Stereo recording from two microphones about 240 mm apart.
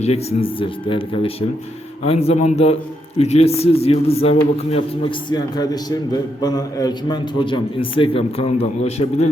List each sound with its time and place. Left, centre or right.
0.0 s a man's voice: left